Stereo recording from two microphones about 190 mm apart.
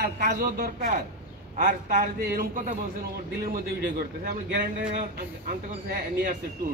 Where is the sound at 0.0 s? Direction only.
55° right (ahead or behind).